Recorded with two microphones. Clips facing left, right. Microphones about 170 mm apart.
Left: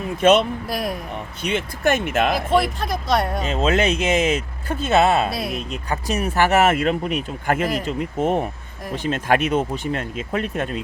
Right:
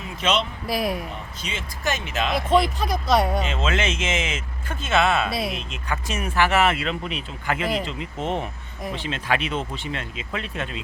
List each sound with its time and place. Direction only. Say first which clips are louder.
0.2 s speech: left 9 dB; 55° left (ahead or behind)
0.7 s speech: right 1 dB; centre (ahead or behind)
1.4 s speech: left 9 dB; 60° left (ahead or behind)
2.3 s speech: left 1 dB; centre (ahead or behind)
3.4 s speech: left 6 dB; 40° left (ahead or behind)
5.3 s speech: even; centre (ahead or behind)
5.5 s speech: left 4 dB; 40° left (ahead or behind)